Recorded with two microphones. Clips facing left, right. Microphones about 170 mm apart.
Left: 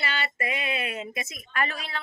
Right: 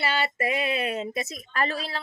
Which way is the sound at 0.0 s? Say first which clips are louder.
Right 5 dB; 40° right (ahead or behind).